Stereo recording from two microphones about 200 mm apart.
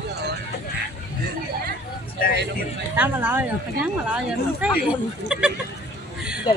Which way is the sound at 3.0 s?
10° right (ahead or behind).